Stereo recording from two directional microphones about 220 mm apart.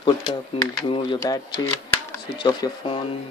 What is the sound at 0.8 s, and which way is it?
Speech, 20° left (ahead or behind).